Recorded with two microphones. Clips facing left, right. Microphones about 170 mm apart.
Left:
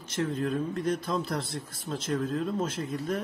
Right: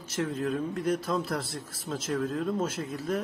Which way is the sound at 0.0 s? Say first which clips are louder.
Left 1 dB; 10° right (ahead or behind).